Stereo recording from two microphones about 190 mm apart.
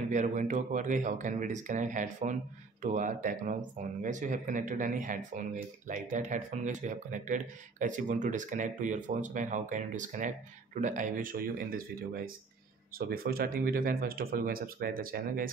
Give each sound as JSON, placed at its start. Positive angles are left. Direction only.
{"t": 0.1, "sound": "speech", "side_deg": -40}